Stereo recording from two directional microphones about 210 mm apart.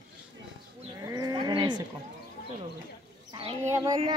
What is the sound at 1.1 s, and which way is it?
Livestock, 20° right (ahead or behind).